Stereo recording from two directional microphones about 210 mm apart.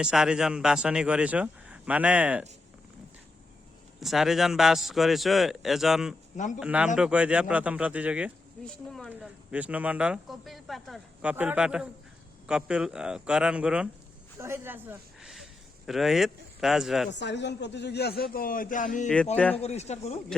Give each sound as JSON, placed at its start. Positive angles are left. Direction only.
{"t": 0.0, "sound": "speech", "side_deg": -5}
{"t": 4.0, "sound": "speech", "side_deg": 0}
{"t": 17.1, "sound": "a man's voice", "side_deg": 55}
{"t": 19.0, "sound": "speech", "side_deg": 5}
{"t": 19.6, "sound": "speech", "side_deg": 30}